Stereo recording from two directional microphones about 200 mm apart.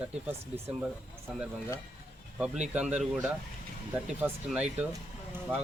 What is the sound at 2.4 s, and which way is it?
A man's voice, 5° right (ahead or behind).